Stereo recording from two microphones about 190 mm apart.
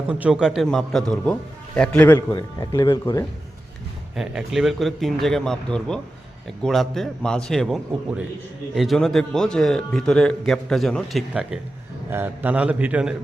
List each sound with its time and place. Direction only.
0.1 s speech: 5° right (ahead or behind)
2.1 s speech: 20° left (ahead or behind)
4.1 s a man's voice: centre (ahead or behind)